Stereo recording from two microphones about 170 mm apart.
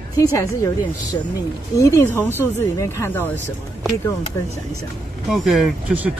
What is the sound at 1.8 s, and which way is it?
A woman's voice, 20° left (ahead or behind).